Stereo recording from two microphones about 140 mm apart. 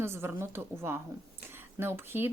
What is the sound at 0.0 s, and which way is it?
Speech, 15° right (ahead or behind).